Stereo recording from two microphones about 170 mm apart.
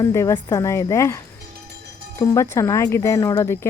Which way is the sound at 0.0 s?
15° left (ahead or behind).